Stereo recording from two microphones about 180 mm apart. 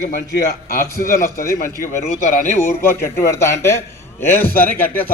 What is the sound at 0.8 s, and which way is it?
Speech, 55° left (ahead or behind).